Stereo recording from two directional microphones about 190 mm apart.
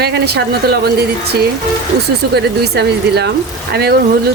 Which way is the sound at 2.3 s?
60° right (ahead or behind).